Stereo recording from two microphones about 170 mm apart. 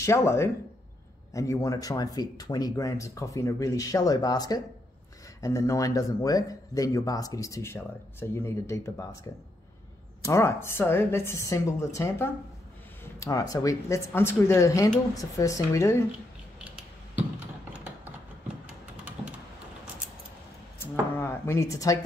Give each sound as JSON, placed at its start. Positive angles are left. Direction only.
{"t": 0.0, "sound": "a woman's voice", "side_deg": 15}
{"t": 10.2, "sound": "a woman's voice", "side_deg": 15}
{"t": 17.7, "sound": "a sound", "side_deg": -5}
{"t": 19.0, "sound": "computer keyboard", "side_deg": -10}
{"t": 21.2, "sound": "speech", "side_deg": 15}